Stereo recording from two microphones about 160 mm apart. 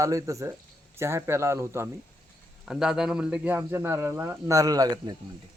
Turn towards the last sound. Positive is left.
turn(degrees=-25)  # may be behind; listen again after turning